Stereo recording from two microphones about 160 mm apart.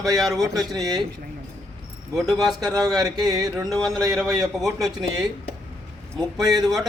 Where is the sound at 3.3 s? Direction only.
25° right (ahead or behind).